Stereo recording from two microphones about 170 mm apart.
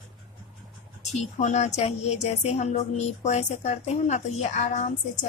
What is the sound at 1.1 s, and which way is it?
A woman's voice, 40° left (ahead or behind).